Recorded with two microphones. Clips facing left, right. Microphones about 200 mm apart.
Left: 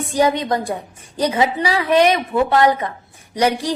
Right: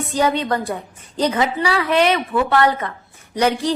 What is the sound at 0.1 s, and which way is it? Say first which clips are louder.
A woman's voice: left 2 dB; 15° left (ahead or behind).